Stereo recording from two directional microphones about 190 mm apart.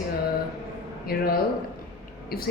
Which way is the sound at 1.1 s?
55° left (ahead or behind).